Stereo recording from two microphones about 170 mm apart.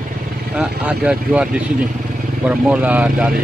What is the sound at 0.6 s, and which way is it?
Speech, 10° right (ahead or behind).